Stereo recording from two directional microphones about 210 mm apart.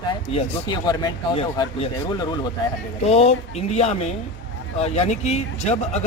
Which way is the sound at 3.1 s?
30° left (ahead or behind).